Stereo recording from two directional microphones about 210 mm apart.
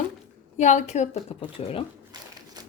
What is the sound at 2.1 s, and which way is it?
Crumpling, 20° right (ahead or behind).